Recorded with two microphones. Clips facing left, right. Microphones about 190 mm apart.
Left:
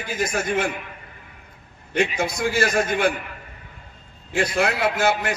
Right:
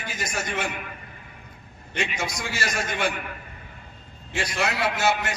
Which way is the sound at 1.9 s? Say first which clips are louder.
Left 7 dB; 55° left (ahead or behind).